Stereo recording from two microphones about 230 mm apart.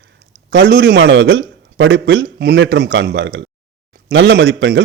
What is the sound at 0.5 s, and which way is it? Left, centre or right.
A man's voice, right.